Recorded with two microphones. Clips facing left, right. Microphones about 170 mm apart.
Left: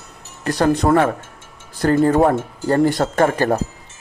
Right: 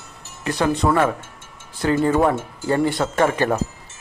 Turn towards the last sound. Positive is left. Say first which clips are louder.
# left 2 dB
turn(degrees=40)  # may be behind; listen again after turning